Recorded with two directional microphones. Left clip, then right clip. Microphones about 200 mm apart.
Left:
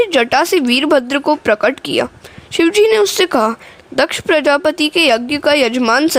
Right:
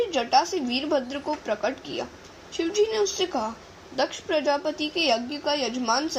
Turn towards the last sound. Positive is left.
turn(degrees=50)  # may be behind; listen again after turning